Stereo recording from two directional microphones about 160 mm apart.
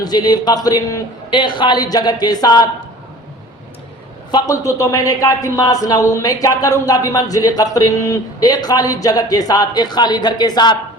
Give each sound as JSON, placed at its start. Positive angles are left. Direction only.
{"t": 0.0, "sound": "a man's voice", "side_deg": 25}
{"t": 4.3, "sound": "a man's voice", "side_deg": 25}